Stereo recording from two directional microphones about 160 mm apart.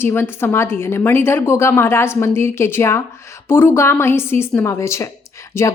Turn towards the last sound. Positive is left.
turn(degrees=15)  # may be behind; listen again after turning